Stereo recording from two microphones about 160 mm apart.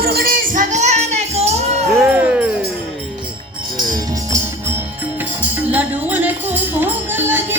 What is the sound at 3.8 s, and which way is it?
Music, 25° right (ahead or behind).